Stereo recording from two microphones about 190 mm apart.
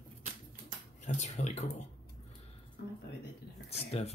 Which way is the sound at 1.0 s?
35° left (ahead or behind).